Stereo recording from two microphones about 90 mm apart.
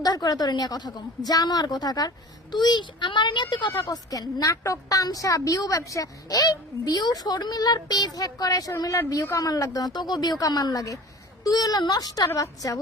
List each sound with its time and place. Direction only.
0.0 s a woman's voice: 45° left (ahead or behind); by 3.7 s 60° left (ahead or behind)
3.8 s a woman's voice: 45° left (ahead or behind)